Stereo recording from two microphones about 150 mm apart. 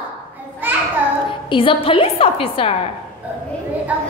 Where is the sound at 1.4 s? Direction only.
35° left (ahead or behind).